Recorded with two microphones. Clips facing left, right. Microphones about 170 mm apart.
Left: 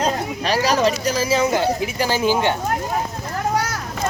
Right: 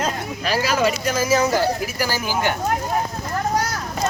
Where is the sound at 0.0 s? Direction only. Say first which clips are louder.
Left 3 dB; 35° left (ahead or behind).